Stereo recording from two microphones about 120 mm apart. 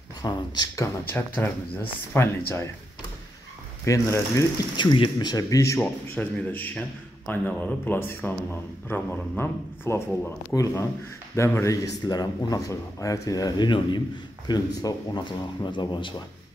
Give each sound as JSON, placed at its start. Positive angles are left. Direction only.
{"t": 0.2, "sound": "speech", "side_deg": 30}
{"t": 1.3, "sound": "speech", "side_deg": 15}
{"t": 3.8, "sound": "speech", "side_deg": 25}
{"t": 4.7, "sound": "a man's voice", "side_deg": 40}
{"t": 5.8, "sound": "a man's voice", "side_deg": 15}